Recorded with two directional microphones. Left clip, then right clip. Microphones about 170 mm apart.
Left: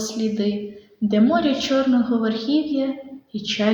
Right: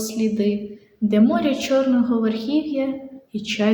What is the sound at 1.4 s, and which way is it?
Speech, 45° right (ahead or behind).